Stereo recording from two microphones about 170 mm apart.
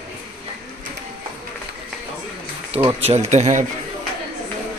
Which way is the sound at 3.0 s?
40° right (ahead or behind).